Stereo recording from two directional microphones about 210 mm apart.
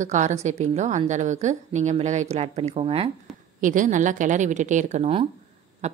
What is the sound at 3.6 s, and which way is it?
A woman's voice, 40° right (ahead or behind).